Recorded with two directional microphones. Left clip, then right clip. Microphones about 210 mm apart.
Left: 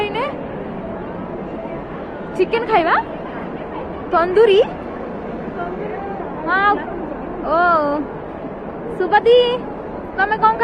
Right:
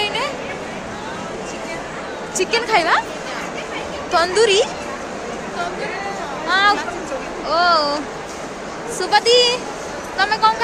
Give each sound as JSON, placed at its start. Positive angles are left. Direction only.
{"t": 0.0, "sound": "a sound", "side_deg": -5}
{"t": 2.4, "sound": "a woman's voice", "side_deg": -15}
{"t": 4.1, "sound": "a woman's voice", "side_deg": -15}
{"t": 6.5, "sound": "a woman's voice", "side_deg": -15}
{"t": 9.0, "sound": "a woman's voice", "side_deg": -10}